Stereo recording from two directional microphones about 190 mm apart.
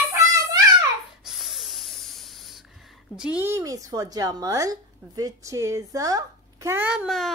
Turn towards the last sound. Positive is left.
turn(degrees=0)  # may be behind; listen again after turning